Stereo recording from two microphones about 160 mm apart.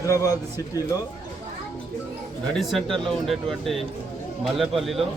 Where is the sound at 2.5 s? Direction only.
Centre (ahead or behind).